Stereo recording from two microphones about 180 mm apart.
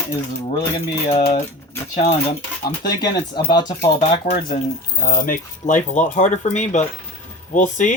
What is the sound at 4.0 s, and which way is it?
Speech, 45° left (ahead or behind).